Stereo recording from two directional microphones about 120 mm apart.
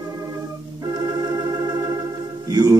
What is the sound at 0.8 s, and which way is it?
Organ, 30° right (ahead or behind).